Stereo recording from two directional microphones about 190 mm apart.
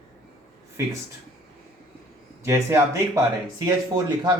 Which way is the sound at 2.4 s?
15° right (ahead or behind).